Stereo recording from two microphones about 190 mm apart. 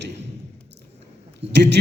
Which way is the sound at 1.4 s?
65° right (ahead or behind).